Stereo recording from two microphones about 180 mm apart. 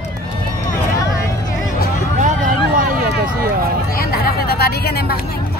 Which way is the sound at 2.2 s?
45° right (ahead or behind).